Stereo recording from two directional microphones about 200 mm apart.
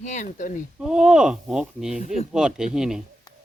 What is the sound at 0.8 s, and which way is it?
Speech, 5° right (ahead or behind).